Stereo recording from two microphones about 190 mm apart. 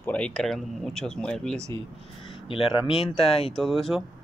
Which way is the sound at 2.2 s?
25° left (ahead or behind).